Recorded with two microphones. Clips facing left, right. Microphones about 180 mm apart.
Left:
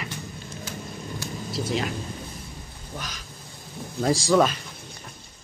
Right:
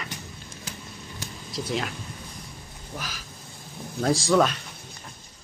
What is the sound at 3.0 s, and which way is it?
Speech, 5° right (ahead or behind).